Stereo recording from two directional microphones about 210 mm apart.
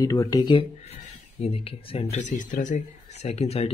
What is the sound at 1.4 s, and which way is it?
A man's voice, 25° left (ahead or behind).